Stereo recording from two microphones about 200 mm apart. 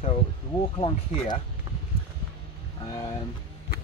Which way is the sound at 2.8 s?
20° left (ahead or behind).